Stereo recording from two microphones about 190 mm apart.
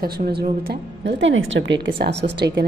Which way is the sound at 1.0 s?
80° right.